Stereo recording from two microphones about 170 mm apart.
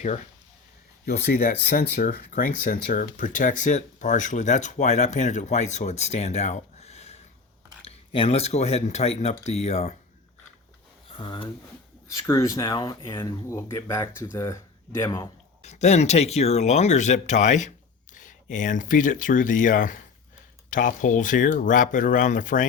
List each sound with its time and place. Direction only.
0.0 s speech: 45° left (ahead or behind)
1.0 s speech: 70° left (ahead or behind); by 9.9 s 40° left (ahead or behind)
11.1 s speech: 30° left (ahead or behind)
12.2 s speech: 15° left (ahead or behind)
15.6 s speech: 40° left (ahead or behind)